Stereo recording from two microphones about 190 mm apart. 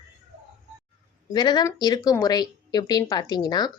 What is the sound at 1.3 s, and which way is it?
Speech, 20° left (ahead or behind).